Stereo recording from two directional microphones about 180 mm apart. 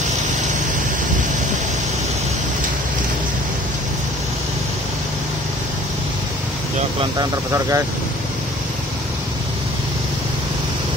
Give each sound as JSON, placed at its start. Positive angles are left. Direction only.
{"t": 7.0, "sound": "speech", "side_deg": -20}